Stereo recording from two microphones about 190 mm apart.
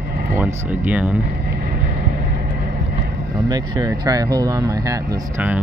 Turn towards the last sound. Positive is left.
turn(degrees=-20)  # may be behind; listen again after turning